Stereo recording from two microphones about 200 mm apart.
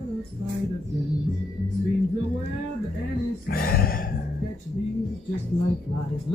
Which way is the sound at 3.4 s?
45° left (ahead or behind).